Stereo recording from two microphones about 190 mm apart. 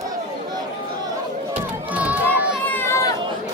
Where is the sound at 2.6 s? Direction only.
10° left (ahead or behind).